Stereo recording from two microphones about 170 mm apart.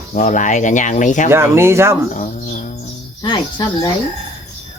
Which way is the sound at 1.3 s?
15° right (ahead or behind).